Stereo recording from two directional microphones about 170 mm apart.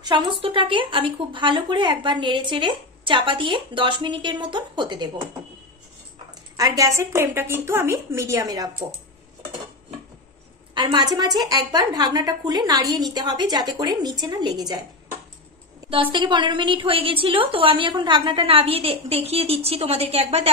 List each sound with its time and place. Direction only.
0.0 s a woman's voice: 25° right (ahead or behind)
6.5 s a woman's voice: 20° right (ahead or behind)
10.7 s a woman's voice: 25° right (ahead or behind)